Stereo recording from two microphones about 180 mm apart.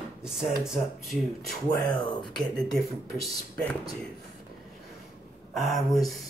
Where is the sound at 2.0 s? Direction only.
25° left (ahead or behind).